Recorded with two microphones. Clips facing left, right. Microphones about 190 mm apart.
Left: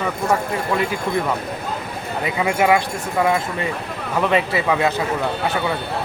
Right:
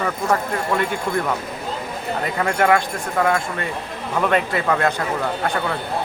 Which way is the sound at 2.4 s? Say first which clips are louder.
Left 1 dB; 10° left (ahead or behind).